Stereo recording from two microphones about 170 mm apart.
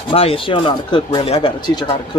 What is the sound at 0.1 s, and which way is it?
Speech, 35° left (ahead or behind).